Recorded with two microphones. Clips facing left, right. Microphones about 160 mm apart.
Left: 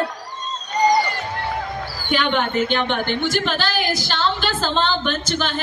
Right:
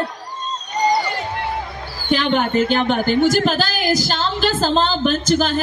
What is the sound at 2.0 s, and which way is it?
A woman's voice, 35° right (ahead or behind).